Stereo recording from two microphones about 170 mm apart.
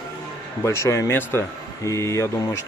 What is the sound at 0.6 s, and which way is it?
Speech, 15° left (ahead or behind).